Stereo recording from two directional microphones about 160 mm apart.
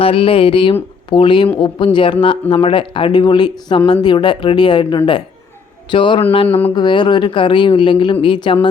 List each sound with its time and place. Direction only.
0.0 s speech: 35° left (ahead or behind)
6.5 s speech: 10° left (ahead or behind)
6.7 s speech: 30° left (ahead or behind)